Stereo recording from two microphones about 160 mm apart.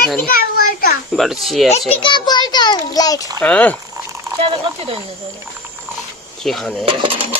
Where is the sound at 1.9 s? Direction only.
30° left (ahead or behind).